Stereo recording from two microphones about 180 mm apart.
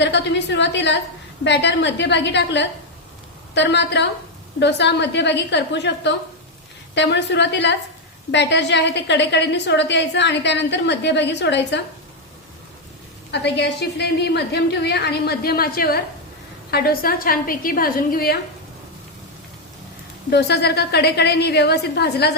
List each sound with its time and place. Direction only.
0.0 s a woman's voice: 75° left (ahead or behind)
13.3 s a woman's voice: 70° left (ahead or behind)
20.3 s a woman's voice: 65° left (ahead or behind)